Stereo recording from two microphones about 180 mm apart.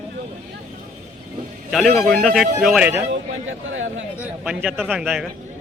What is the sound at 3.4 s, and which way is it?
Speech, 90° right.